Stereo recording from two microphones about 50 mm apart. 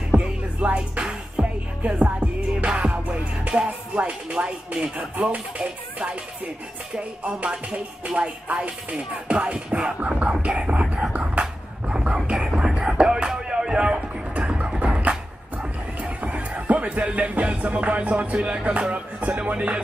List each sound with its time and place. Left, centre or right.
0.2 s music: right
5.3 s speech: right
7.2 s speech: right
11.4 s a sound: right
12.3 s music: centre
16.0 s speech: right